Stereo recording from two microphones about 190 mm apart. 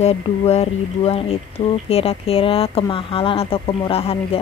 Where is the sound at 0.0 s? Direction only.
35° left (ahead or behind).